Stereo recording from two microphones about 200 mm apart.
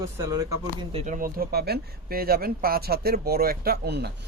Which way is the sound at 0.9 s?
40° right (ahead or behind).